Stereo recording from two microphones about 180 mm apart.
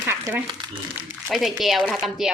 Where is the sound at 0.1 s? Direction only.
15° right (ahead or behind).